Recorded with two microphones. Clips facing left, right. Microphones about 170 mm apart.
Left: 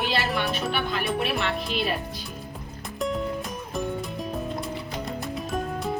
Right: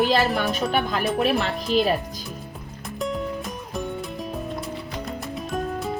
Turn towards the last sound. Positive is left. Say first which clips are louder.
# right 1 dB
turn(degrees=0)  # may be behind; listen again after turning